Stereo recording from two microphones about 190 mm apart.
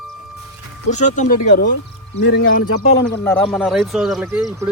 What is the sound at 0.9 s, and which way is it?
Speech, 40° left (ahead or behind).